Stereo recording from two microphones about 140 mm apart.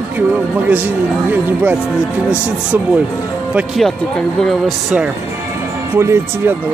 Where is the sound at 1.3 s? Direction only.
15° right (ahead or behind).